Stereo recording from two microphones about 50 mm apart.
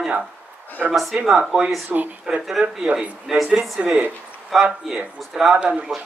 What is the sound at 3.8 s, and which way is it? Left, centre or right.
Speech, centre.